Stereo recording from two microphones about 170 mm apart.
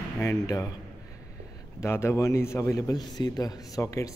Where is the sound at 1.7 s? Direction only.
15° left (ahead or behind).